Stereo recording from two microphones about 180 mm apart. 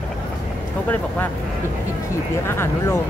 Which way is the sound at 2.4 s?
15° left (ahead or behind).